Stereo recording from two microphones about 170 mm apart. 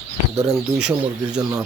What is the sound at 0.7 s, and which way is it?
Speech, 5° right (ahead or behind).